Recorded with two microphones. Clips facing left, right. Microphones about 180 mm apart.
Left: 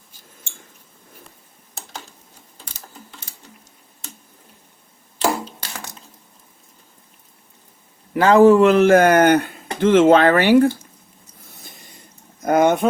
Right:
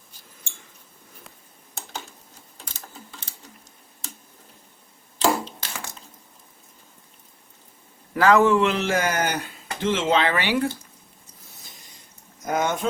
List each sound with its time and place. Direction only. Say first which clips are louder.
8.1 s speech: left 6 dB; 30° left (ahead or behind); by 10.7 s 45° left (ahead or behind)
12.4 s speech: left 9 dB; 60° left (ahead or behind)